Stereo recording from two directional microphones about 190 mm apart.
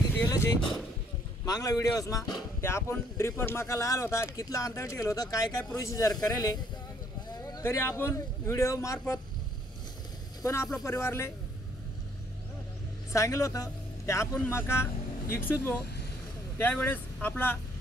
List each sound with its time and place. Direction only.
0.1 s a sound: 15° left (ahead or behind)
1.4 s a man's voice: 20° left (ahead or behind)
10.4 s speech: 15° left (ahead or behind)
13.1 s speech: 15° left (ahead or behind)